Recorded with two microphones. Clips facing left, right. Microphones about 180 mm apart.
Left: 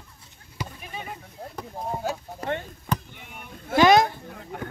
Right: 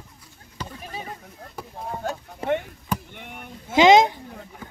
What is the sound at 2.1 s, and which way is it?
Speech, centre (ahead or behind).